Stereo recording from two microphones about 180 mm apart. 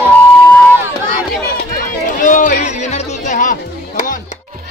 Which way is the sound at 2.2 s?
45° left (ahead or behind).